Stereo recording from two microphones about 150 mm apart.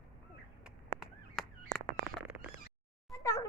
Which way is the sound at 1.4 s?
Centre (ahead or behind).